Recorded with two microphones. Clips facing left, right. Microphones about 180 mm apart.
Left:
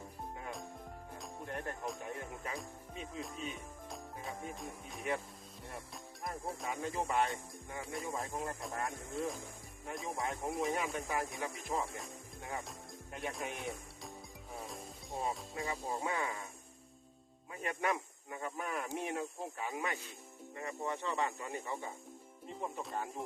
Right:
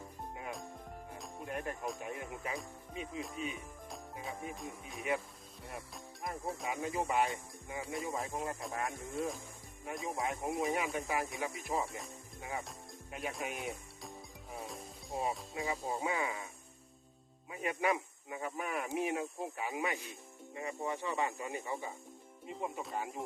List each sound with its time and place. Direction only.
1.5 s music: 15° right (ahead or behind)
2.6 s speech: 5° right (ahead or behind)
17.5 s speech: 10° right (ahead or behind)